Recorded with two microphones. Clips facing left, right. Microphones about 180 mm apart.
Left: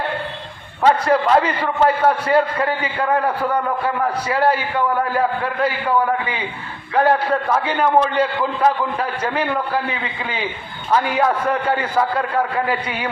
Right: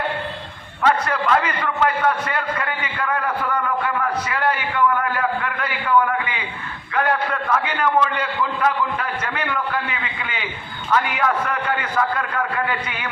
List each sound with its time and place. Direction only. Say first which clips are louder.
0.8 s a man's voice: left 5 dB; 30° left (ahead or behind)